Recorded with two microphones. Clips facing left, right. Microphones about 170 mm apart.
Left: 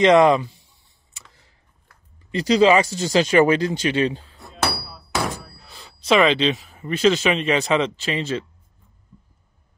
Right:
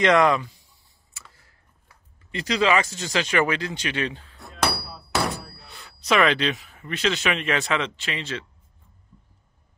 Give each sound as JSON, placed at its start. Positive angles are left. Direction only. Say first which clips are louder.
{"t": 0.0, "sound": "speech", "louder": "left 5 dB", "side_deg": 25}
{"t": 1.1, "sound": "computer keyboard", "louder": "even", "side_deg": 20}
{"t": 2.3, "sound": "speech", "louder": "left 6 dB", "side_deg": 30}
{"t": 4.4, "sound": "hammer", "louder": "right 1 dB", "side_deg": 0}
{"t": 5.8, "sound": "speech", "louder": "left 4 dB", "side_deg": 25}
{"t": 7.8, "sound": "speech", "louder": "left 6 dB", "side_deg": 35}